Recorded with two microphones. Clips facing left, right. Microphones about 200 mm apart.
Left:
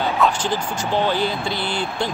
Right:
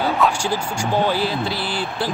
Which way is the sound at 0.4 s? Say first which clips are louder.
Right 1 dB; 10° right (ahead or behind).